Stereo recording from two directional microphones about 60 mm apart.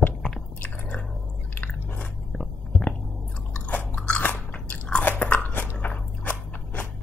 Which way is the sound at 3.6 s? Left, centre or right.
Left.